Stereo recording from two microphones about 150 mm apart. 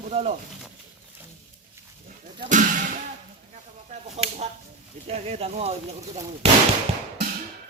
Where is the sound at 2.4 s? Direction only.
60° right (ahead or behind).